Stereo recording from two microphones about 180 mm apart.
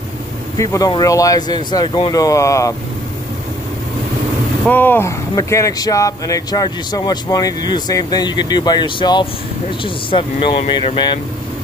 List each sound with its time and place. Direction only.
0.6 s speech: 20° left (ahead or behind)
4.6 s speech: 10° left (ahead or behind)